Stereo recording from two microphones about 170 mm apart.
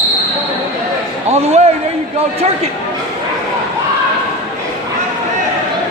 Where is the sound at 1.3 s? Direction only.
40° right (ahead or behind).